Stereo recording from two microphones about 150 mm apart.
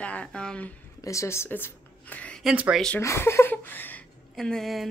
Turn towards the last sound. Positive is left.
turn(degrees=0)  # may be behind; listen again after turning